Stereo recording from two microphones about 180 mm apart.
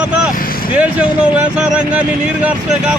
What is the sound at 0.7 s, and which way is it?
Speech, 5° right (ahead or behind).